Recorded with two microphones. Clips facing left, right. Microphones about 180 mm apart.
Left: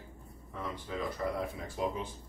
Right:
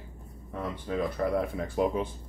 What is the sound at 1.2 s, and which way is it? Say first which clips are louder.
Speech: right 7 dB; 55° right (ahead or behind).